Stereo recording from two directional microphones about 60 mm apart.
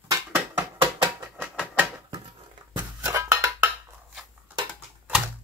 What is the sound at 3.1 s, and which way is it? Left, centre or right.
Music, right.